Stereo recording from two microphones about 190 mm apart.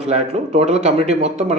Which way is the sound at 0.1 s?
35° right (ahead or behind).